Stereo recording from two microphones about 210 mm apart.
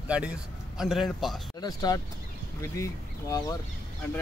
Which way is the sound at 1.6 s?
20° left (ahead or behind).